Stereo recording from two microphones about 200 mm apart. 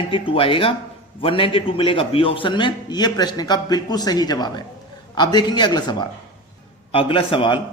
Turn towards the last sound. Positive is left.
turn(degrees=25)  # may be behind; listen again after turning